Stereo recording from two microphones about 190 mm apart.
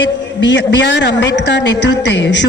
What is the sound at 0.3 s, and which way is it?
Speech, 70° left (ahead or behind).